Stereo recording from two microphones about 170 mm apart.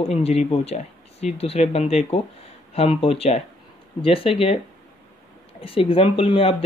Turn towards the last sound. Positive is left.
turn(degrees=30)  # may be behind; listen again after turning